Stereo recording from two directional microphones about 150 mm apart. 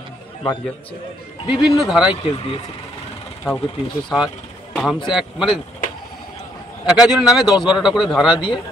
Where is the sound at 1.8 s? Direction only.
5° right (ahead or behind).